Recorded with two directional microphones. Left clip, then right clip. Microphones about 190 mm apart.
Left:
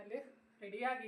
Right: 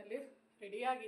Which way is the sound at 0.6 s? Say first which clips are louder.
Right 1 dB; 5° right (ahead or behind).